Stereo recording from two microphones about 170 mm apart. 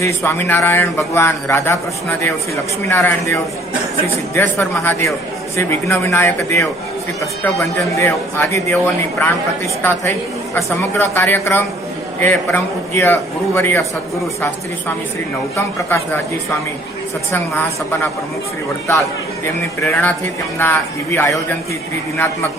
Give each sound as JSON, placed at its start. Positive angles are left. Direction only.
{"t": 0.0, "sound": "a man's voice", "side_deg": 15}
{"t": 4.4, "sound": "a man's voice", "side_deg": 15}
{"t": 15.5, "sound": "a man's voice", "side_deg": 15}
{"t": 19.9, "sound": "a man's voice", "side_deg": 10}